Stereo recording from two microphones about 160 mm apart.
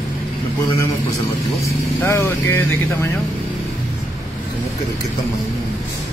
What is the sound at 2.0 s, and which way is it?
Speech, 15° left (ahead or behind).